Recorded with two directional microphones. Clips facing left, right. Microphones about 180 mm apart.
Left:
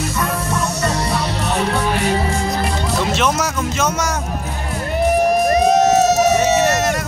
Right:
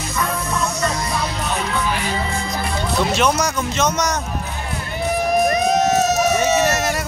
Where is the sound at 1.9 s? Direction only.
40° left (ahead or behind).